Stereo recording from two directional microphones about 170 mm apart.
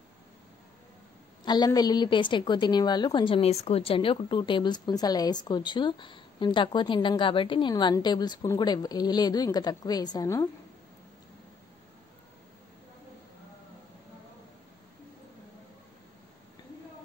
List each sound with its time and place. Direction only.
1.4 s a woman's voice: 25° left (ahead or behind)